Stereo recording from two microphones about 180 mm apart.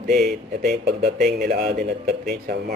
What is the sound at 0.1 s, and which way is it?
Speech, centre (ahead or behind).